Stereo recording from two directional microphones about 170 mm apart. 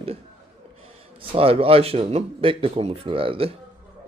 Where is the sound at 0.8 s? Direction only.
35° right (ahead or behind).